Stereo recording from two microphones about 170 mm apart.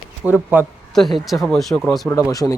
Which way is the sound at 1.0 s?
Centre (ahead or behind).